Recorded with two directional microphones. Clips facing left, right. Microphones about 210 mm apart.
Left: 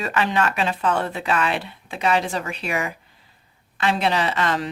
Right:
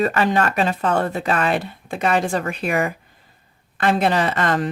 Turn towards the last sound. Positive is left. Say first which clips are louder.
# right 3 dB
turn(degrees=-50)  # may be behind; listen again after turning